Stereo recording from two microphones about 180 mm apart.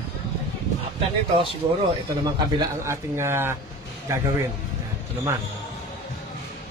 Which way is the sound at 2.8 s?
15° right (ahead or behind).